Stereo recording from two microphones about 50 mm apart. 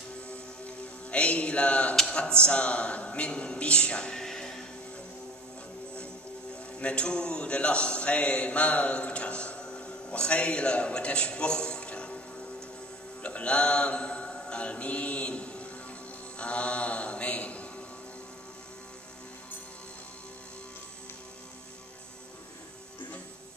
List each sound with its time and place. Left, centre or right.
1.1 s speech: left
6.5 s a man's voice: left
13.2 s mantra: left